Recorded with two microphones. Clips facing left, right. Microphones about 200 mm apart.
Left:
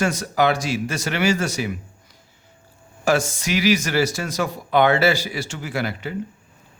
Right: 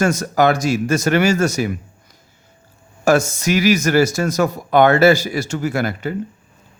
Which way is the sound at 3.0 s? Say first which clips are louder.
Right 5 dB; 45° right (ahead or behind).